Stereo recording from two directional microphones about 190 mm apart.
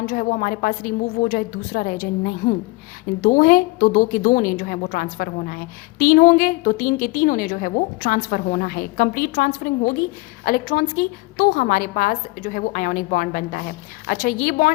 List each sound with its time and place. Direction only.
0.0 s a woman's voice: 45° left (ahead or behind)